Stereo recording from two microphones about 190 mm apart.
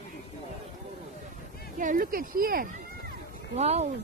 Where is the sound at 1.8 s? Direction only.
45° right (ahead or behind).